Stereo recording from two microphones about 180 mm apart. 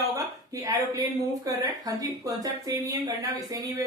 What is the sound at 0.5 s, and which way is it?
Speech, 20° right (ahead or behind).